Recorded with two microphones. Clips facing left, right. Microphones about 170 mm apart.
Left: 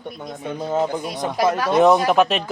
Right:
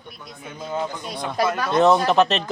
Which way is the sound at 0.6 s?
40° left (ahead or behind).